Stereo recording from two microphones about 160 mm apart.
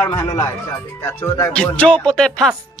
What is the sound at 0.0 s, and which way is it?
Speech, 15° left (ahead or behind).